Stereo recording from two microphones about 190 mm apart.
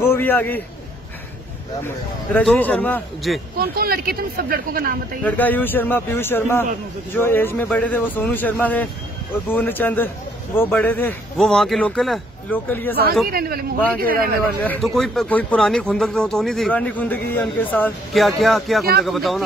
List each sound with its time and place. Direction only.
0.0 s a man's voice: 10° left (ahead or behind)
2.3 s a man's voice: 10° left (ahead or behind)
3.5 s speech: 50° right (ahead or behind)
5.2 s a man's voice: 10° left (ahead or behind)
13.3 s speech: 50° right (ahead or behind)
14.6 s speech: 5° left (ahead or behind)